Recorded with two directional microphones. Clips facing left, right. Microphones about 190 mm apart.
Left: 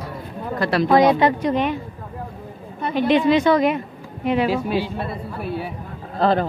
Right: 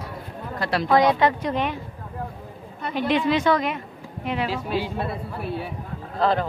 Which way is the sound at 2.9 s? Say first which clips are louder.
Left 5 dB; 5° right (ahead or behind).